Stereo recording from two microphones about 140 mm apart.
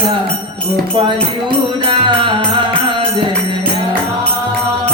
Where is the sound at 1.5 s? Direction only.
35° right (ahead or behind).